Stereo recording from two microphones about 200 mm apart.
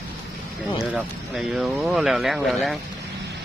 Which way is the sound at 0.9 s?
5° right (ahead or behind).